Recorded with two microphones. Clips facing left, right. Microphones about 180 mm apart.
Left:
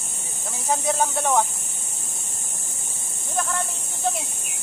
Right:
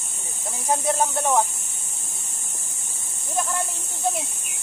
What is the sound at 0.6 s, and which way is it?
Speech, 10° right (ahead or behind).